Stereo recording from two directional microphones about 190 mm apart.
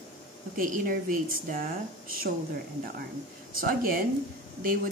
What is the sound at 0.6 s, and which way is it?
Speech, 45° right (ahead or behind).